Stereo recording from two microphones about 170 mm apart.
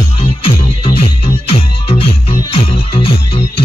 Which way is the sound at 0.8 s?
35° left (ahead or behind).